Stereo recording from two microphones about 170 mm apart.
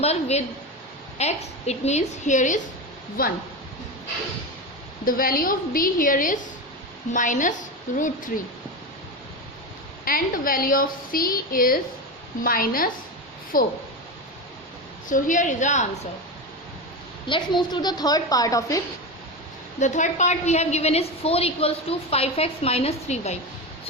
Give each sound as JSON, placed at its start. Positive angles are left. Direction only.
{"t": 0.0, "sound": "a woman's voice", "side_deg": 40}
{"t": 3.2, "sound": "a woman's voice", "side_deg": 60}
{"t": 5.0, "sound": "a woman's voice", "side_deg": 55}
{"t": 10.1, "sound": "a woman's voice", "side_deg": 55}
{"t": 15.1, "sound": "a woman's voice", "side_deg": 50}
{"t": 17.2, "sound": "a woman's voice", "side_deg": 30}
{"t": 19.8, "sound": "a woman's voice", "side_deg": 45}